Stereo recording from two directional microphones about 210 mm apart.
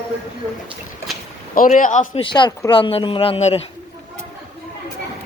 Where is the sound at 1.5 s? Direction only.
40° left (ahead or behind).